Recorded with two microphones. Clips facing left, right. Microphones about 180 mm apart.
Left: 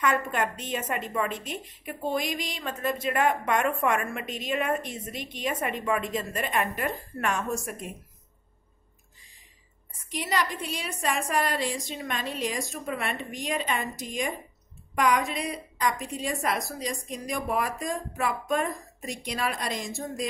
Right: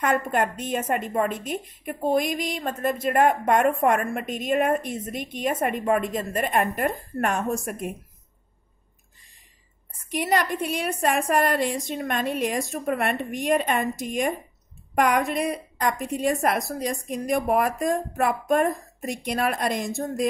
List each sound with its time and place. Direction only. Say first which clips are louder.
0.0 s a woman's voice: right 3 dB; 50° right (ahead or behind)
10.1 s a woman's voice: right 5 dB; 55° right (ahead or behind)